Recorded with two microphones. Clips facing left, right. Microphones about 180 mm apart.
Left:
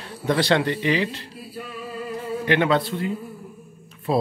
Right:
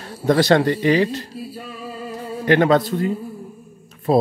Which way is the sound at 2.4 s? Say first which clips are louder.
Right 5 dB; 45° right (ahead or behind).